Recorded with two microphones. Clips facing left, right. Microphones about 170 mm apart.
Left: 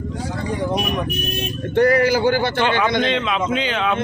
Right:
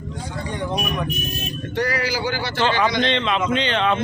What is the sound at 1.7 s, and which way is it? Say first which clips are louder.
Speech: left 9 dB; 50° left (ahead or behind).